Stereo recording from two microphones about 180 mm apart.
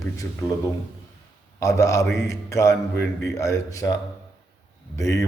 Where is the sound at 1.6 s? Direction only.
15° left (ahead or behind).